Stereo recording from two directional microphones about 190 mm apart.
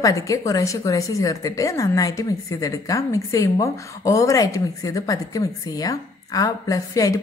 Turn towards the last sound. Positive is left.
turn(degrees=20)  # may be behind; listen again after turning